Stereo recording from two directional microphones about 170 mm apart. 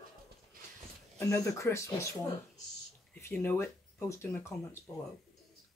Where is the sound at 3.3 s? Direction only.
10° left (ahead or behind).